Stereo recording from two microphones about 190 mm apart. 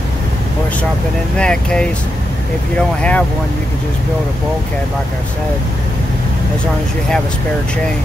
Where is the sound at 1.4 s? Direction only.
5° left (ahead or behind).